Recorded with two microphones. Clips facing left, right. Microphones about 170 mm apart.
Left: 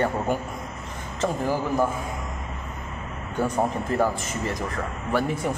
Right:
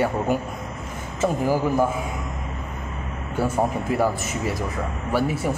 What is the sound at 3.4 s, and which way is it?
A man's voice, 10° right (ahead or behind).